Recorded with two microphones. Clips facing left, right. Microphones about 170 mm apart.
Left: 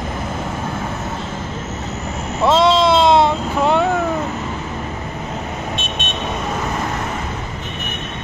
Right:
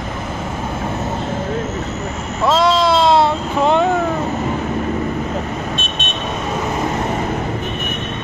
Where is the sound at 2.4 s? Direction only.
25° left (ahead or behind).